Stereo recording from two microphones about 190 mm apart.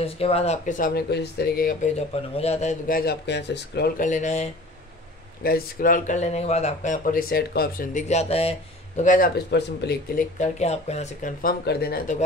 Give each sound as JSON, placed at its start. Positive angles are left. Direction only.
{"t": 0.0, "sound": "speech", "side_deg": 30}
{"t": 2.3, "sound": "speech", "side_deg": 35}
{"t": 4.0, "sound": "speech", "side_deg": 40}
{"t": 5.4, "sound": "speech", "side_deg": 50}
{"t": 9.5, "sound": "speech", "side_deg": 65}
{"t": 10.4, "sound": "speech", "side_deg": 35}
{"t": 11.4, "sound": "speech", "side_deg": 55}